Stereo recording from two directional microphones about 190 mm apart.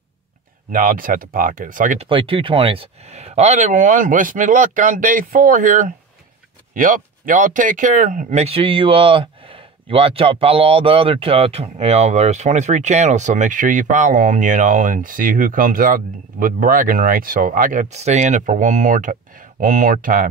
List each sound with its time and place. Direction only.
0.7 s speech: 45° right (ahead or behind)
2.0 s speech: 25° right (ahead or behind); by 20.2 s 45° right (ahead or behind)